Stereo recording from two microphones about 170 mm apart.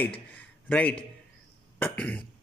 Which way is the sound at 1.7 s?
10° left (ahead or behind).